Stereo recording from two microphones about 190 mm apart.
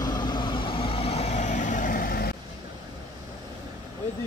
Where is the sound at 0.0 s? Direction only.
20° left (ahead or behind); by 2.3 s 50° left (ahead or behind).